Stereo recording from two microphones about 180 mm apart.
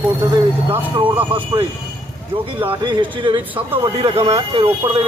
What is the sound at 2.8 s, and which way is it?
Speech, 25° right (ahead or behind).